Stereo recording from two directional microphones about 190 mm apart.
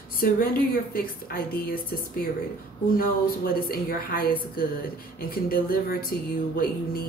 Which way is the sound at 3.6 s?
50° left (ahead or behind).